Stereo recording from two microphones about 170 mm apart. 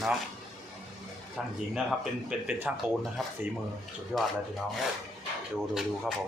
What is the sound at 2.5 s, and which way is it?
Speech, 10° right (ahead or behind).